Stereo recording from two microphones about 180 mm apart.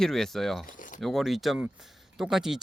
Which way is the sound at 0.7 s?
45° left (ahead or behind).